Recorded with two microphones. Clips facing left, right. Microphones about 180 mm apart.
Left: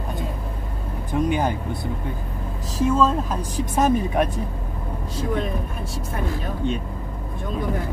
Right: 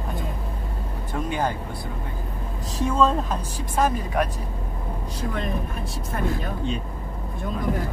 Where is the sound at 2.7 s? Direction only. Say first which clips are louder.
Left 2 dB; centre (ahead or behind).